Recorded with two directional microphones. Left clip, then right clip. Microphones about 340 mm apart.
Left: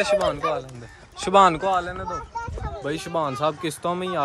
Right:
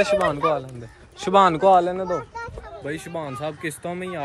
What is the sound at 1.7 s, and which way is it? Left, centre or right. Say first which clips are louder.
Speech: right 7 dB; centre.